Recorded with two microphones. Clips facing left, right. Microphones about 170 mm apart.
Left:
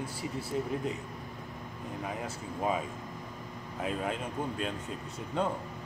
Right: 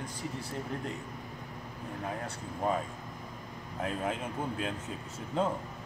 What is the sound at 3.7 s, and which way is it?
Speech, centre (ahead or behind).